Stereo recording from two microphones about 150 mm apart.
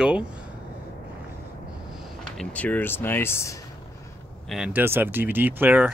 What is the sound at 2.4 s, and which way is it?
Speech, 10° left (ahead or behind).